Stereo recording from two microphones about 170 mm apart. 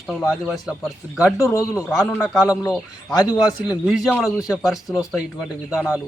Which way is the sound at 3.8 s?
Centre (ahead or behind).